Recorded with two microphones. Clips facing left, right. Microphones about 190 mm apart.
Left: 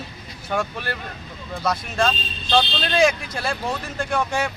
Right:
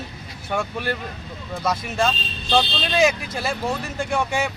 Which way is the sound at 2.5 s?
5° right (ahead or behind).